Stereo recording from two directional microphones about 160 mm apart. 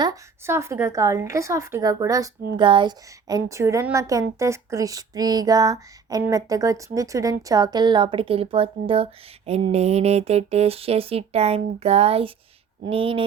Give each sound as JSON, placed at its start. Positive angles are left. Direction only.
{"t": 0.0, "sound": "speech", "side_deg": -20}